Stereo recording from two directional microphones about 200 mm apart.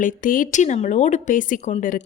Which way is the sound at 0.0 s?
40° left (ahead or behind).